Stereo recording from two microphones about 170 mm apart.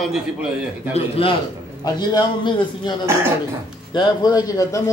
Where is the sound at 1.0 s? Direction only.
35° left (ahead or behind).